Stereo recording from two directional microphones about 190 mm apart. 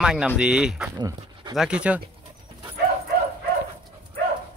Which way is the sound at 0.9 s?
20° right (ahead or behind).